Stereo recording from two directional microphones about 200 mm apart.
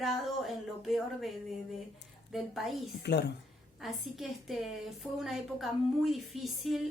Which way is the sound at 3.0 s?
55° left (ahead or behind).